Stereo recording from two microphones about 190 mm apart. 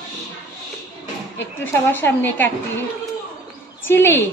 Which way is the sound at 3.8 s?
10° left (ahead or behind).